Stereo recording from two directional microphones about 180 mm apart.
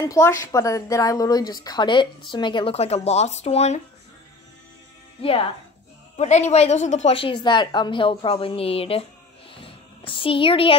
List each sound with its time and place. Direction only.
0.0 s a woman's voice: 15° left (ahead or behind); by 3.8 s 35° left (ahead or behind)
5.2 s a woman's voice: 30° left (ahead or behind)
9.5 s a sound: 30° left (ahead or behind)